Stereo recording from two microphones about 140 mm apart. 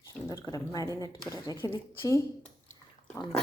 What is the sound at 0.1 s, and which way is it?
Speech, 25° left (ahead or behind).